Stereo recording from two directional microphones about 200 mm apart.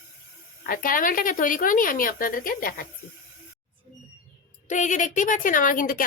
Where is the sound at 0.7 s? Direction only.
45° left (ahead or behind).